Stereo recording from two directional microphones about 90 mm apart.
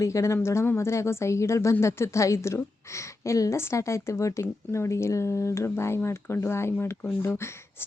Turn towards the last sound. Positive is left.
turn(degrees=30)  # may be behind; listen again after turning